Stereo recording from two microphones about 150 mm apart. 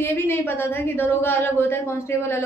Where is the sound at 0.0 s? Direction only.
15° left (ahead or behind).